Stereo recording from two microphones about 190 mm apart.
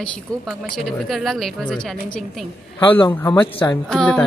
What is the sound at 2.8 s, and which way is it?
Speech, 25° left (ahead or behind).